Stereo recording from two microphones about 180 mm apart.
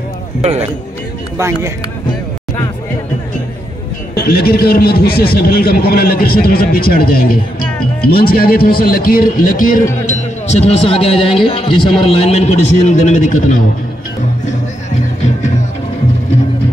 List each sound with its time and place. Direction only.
0.4 s speech: 35° right (ahead or behind)
4.1 s a man's voice: 60° left (ahead or behind)